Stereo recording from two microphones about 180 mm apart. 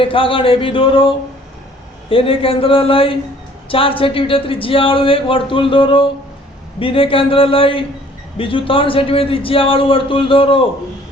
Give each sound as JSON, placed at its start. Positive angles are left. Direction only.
{"t": 0.0, "sound": "a man's voice", "side_deg": 30}